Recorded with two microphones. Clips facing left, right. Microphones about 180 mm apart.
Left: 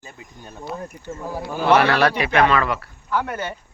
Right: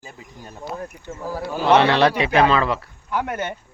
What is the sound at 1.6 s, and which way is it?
A man's voice, 20° right (ahead or behind).